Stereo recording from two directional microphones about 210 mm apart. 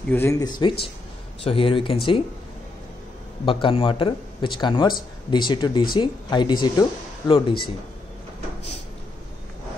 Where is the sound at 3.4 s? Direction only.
25° left (ahead or behind).